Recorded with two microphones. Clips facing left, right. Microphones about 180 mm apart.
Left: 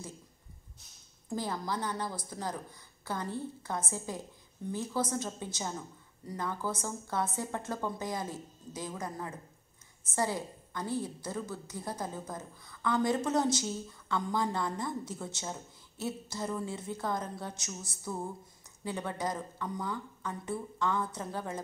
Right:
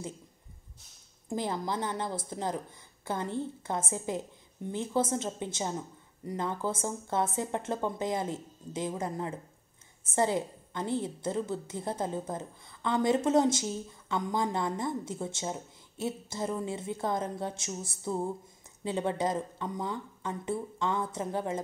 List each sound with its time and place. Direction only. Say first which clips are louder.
1.3 s a woman's voice: right 3 dB; 20° right (ahead or behind)